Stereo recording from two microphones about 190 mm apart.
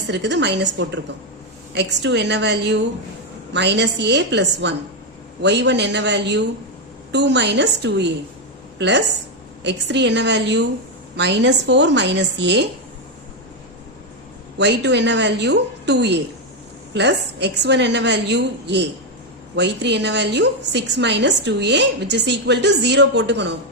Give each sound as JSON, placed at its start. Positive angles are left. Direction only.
{"t": 0.1, "sound": "a woman's voice", "side_deg": -70}
{"t": 14.6, "sound": "a woman's voice", "side_deg": -70}